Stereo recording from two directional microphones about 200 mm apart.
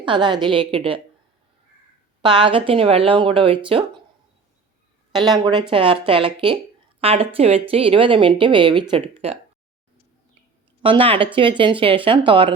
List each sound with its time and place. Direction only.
0.0 s speech: 25° right (ahead or behind)
2.2 s speech: 25° right (ahead or behind)
5.4 s speech: 25° right (ahead or behind)
10.8 s speech: 25° right (ahead or behind)